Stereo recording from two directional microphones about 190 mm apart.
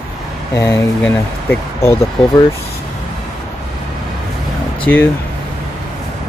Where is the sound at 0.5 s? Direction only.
15° left (ahead or behind).